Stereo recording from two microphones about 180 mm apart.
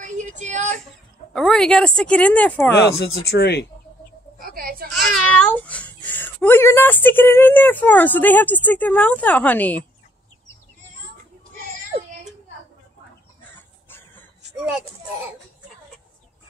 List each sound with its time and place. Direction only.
0.0 s child singing: 40° right (ahead or behind)
1.3 s a woman's voice: 5° left (ahead or behind)
2.8 s speech: 65° left (ahead or behind)
4.4 s a sound: 55° right (ahead or behind)
5.1 s speech: 5° left (ahead or behind)
13.8 s a sound: 10° left (ahead or behind)